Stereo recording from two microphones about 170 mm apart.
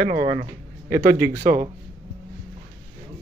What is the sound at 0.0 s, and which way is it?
Speech, 55° right (ahead or behind).